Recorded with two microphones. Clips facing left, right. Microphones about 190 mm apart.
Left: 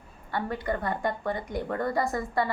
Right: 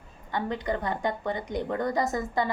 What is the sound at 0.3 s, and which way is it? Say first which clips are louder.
A woman's voice: right 1 dB; 20° right (ahead or behind).